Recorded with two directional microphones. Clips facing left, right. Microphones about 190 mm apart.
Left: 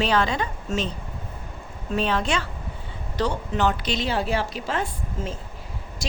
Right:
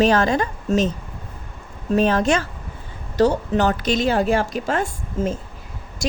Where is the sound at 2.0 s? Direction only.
45° right (ahead or behind).